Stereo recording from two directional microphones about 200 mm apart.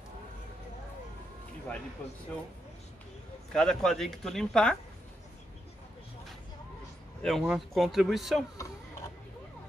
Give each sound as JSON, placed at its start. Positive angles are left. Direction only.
{"t": 3.5, "sound": "speech", "side_deg": 5}
{"t": 7.2, "sound": "speech", "side_deg": 0}